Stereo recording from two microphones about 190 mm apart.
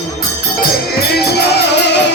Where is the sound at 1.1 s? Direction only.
60° left (ahead or behind).